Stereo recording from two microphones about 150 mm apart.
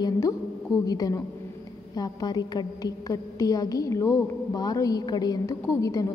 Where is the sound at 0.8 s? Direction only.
25° left (ahead or behind).